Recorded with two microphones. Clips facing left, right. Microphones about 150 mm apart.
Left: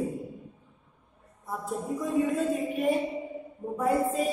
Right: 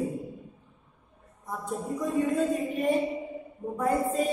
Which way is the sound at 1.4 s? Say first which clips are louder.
Even; centre (ahead or behind).